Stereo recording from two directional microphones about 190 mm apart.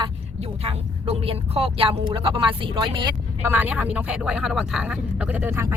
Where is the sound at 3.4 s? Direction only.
10° right (ahead or behind).